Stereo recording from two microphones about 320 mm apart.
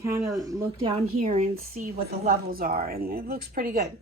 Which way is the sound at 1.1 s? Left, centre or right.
Right.